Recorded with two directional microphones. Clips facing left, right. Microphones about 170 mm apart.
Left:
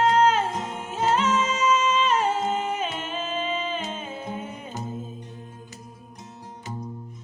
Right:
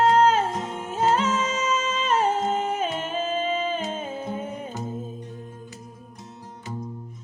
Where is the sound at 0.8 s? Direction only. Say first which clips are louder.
Right 1 dB; 50° right (ahead or behind).